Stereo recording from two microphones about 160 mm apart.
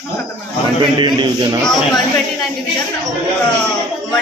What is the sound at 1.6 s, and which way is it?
Speech, centre (ahead or behind).